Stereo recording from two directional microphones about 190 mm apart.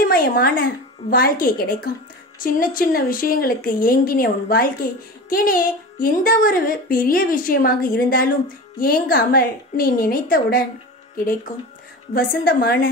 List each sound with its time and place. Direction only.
0.0 s a woman's voice: 50° left (ahead or behind)